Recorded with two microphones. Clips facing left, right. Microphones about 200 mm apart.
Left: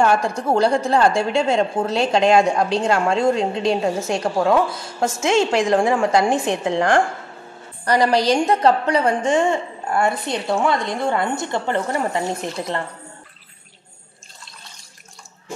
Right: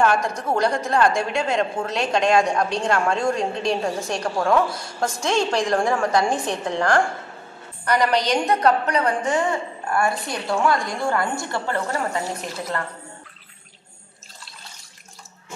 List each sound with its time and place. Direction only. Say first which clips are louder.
0.0 s a woman's voice: left 2 dB; 30° left (ahead or behind)
7.8 s a woman's voice: left 3 dB; 35° left (ahead or behind)